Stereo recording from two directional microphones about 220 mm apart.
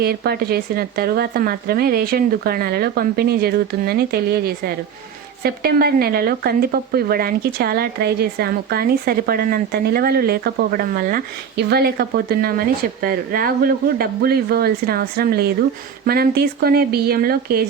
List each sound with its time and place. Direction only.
0.0 s speech: 45° right (ahead or behind)